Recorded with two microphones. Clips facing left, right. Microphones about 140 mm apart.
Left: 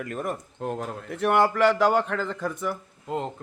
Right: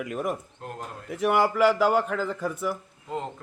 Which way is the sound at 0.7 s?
80° left.